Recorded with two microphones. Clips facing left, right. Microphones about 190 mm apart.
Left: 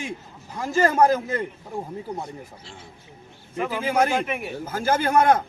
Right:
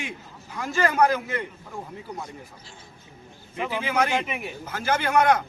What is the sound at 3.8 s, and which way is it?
Speech, 40° left (ahead or behind).